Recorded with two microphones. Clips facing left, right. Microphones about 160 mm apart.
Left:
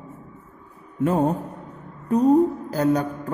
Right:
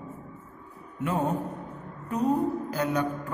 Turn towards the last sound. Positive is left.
turn(degrees=35)  # may be behind; listen again after turning